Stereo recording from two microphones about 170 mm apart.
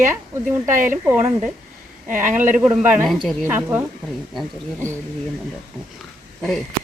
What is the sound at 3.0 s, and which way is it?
Speech, centre (ahead or behind).